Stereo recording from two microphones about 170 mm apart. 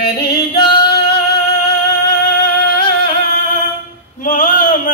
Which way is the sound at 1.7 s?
60° left (ahead or behind).